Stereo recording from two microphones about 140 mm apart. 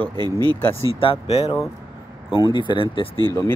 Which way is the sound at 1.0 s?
45° left (ahead or behind).